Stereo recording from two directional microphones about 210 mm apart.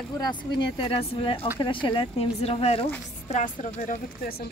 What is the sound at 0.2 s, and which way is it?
Speech, 20° left (ahead or behind).